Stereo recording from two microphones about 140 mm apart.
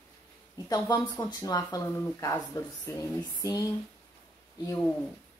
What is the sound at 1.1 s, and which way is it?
Speech, 25° left (ahead or behind).